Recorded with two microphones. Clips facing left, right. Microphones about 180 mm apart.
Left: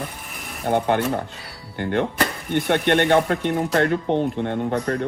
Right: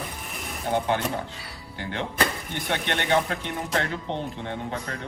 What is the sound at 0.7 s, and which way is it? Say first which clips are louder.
Speech: left 5 dB; 55° left (ahead or behind).